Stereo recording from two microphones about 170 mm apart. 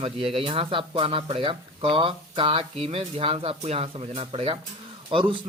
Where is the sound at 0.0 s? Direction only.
35° right (ahead or behind).